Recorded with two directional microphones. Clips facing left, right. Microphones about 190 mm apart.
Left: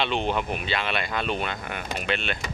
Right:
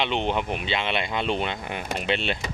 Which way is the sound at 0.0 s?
20° right (ahead or behind).